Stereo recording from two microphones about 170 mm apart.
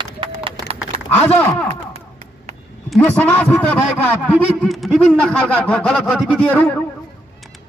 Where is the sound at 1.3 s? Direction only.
10° left (ahead or behind).